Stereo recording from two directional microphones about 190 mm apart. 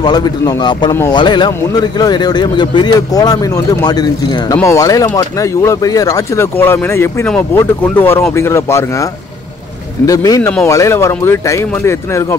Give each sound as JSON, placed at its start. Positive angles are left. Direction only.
{"t": 0.0, "sound": "speech", "side_deg": 20}
{"t": 10.0, "sound": "speech", "side_deg": 20}